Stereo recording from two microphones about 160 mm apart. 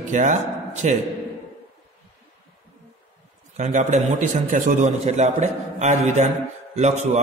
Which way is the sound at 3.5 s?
50° right (ahead or behind).